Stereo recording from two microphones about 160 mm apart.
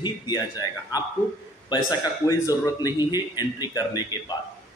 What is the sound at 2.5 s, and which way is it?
A man's voice, 25° left (ahead or behind).